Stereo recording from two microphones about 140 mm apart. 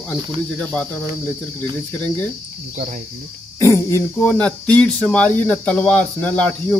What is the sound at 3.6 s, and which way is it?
Speech, 20° left (ahead or behind).